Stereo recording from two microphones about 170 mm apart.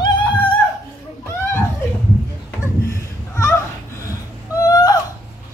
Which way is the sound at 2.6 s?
15° left (ahead or behind).